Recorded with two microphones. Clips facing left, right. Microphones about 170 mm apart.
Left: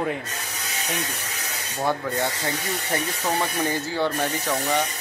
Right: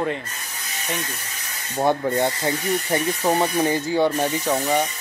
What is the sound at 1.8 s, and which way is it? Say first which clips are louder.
Speech: right 5 dB; 20° right (ahead or behind).